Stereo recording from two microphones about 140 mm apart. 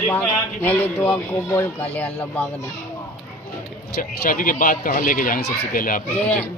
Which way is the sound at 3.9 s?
85° left.